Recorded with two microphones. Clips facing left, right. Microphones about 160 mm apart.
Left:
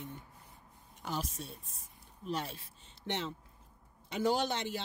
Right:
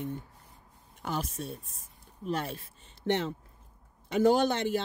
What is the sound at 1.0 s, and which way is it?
Speech, 55° right (ahead or behind).